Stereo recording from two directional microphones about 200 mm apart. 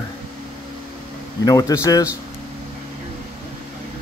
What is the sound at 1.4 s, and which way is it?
Speech, 15° left (ahead or behind).